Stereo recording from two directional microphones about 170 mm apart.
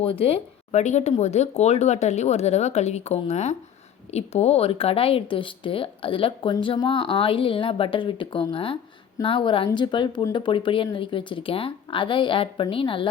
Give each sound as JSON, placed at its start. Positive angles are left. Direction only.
{"t": 0.0, "sound": "speech", "side_deg": 35}